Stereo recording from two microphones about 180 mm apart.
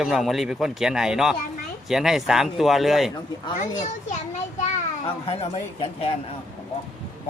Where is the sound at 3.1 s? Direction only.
20° left (ahead or behind).